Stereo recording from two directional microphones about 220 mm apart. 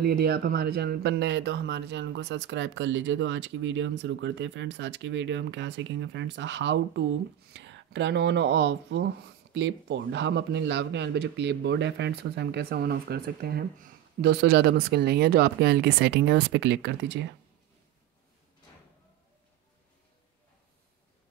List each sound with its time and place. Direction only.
0.0 s speech: 45° right (ahead or behind)